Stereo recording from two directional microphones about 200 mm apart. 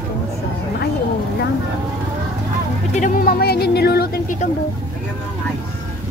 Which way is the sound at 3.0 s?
50° left (ahead or behind).